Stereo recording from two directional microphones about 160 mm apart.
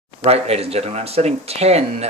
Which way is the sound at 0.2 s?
40° right (ahead or behind).